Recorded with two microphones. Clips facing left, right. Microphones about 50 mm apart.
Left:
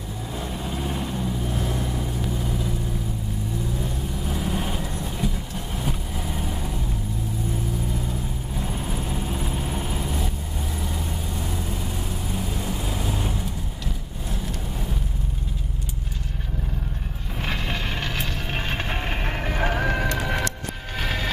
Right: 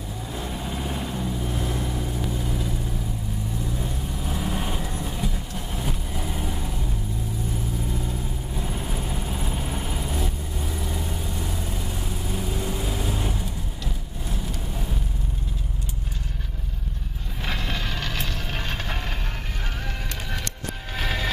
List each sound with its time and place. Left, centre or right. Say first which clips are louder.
0.4 s vehicle: left 1 dB; centre
3.8 s vehicle: left 1 dB; centre
8.5 s vehicle: left 1 dB; centre
17.5 s vehicle: left 1 dB; centre
19.2 s music: left 9 dB; left
20.9 s music: even; centre